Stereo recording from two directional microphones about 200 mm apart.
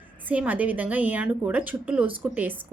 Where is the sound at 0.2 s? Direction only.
10° right (ahead or behind).